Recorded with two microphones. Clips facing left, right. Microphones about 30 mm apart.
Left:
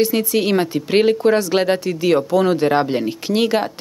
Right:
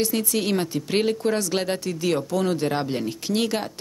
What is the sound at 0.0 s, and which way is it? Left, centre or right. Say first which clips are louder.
Speech: left 7 dB; left.